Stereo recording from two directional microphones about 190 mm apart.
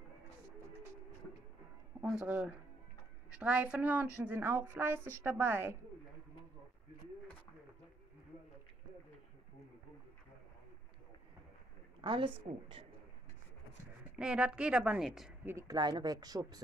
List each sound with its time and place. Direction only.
2.0 s speech: 5° right (ahead or behind)
12.0 s speech: 25° right (ahead or behind)
14.1 s a woman's voice: 5° right (ahead or behind)
15.5 s speech: 20° right (ahead or behind)